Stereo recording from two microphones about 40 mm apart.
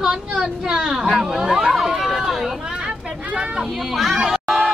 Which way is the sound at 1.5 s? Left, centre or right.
Centre.